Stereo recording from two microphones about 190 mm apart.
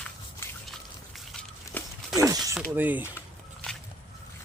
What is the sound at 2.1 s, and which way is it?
Speech, 15° right (ahead or behind).